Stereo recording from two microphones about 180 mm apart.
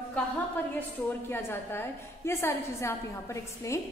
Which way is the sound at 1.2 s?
10° left (ahead or behind).